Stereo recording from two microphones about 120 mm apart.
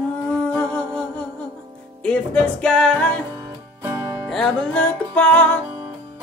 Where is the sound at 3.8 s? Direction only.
25° right (ahead or behind).